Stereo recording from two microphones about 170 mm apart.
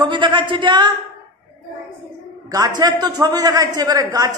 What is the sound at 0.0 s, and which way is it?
Speech, 30° right (ahead or behind).